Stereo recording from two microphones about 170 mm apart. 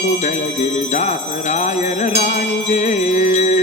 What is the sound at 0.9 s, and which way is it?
Jingle bell, 45° left (ahead or behind).